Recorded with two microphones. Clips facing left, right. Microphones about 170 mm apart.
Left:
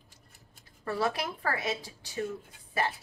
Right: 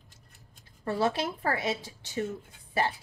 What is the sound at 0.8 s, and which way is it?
A woman's voice, 25° right (ahead or behind).